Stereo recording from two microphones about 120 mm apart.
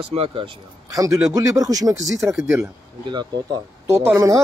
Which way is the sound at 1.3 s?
30° right (ahead or behind).